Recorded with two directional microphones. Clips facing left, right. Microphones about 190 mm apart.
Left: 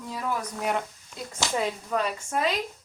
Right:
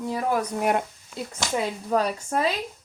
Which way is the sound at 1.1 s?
5° right (ahead or behind).